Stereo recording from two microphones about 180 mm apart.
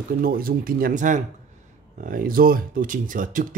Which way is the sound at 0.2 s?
55° right (ahead or behind).